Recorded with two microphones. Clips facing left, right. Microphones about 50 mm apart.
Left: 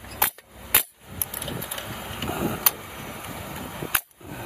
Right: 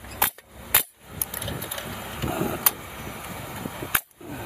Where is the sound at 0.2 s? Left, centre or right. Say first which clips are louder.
Even; centre.